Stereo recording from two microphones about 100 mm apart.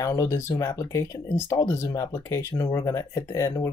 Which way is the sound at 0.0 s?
35° left (ahead or behind).